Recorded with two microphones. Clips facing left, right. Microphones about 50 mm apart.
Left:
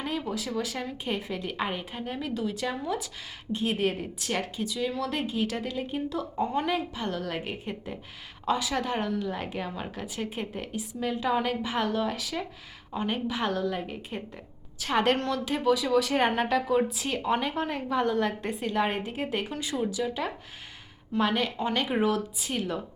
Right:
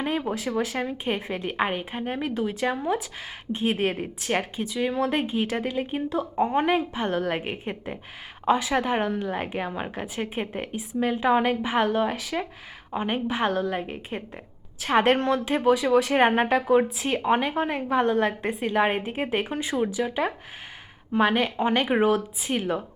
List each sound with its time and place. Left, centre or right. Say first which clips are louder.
0.0 s a woman's voice: right 5 dB; right